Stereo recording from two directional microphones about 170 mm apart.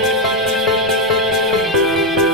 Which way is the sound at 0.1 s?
Centre (ahead or behind).